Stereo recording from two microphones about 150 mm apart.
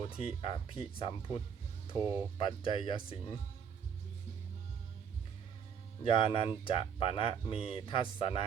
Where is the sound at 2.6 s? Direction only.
35° left (ahead or behind).